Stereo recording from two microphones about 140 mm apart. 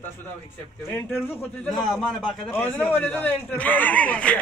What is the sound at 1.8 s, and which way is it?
Speech, centre (ahead or behind).